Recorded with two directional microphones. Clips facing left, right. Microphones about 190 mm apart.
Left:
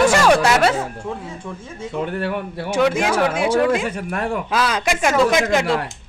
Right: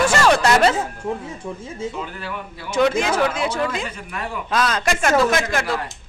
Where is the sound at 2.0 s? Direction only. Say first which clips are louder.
Left 7 dB; 60° left (ahead or behind).